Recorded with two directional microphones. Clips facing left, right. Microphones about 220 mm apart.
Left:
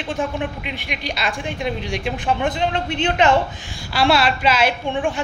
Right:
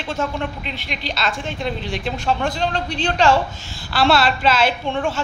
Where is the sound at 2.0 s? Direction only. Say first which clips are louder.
Even; 20° left (ahead or behind).